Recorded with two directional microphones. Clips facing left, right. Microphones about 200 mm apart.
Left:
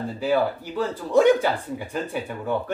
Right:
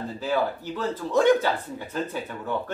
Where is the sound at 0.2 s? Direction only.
10° left (ahead or behind).